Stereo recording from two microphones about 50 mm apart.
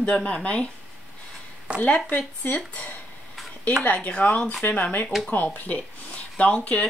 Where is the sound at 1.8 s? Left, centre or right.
Left.